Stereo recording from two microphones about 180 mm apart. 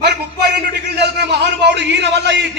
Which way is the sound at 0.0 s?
65° right (ahead or behind).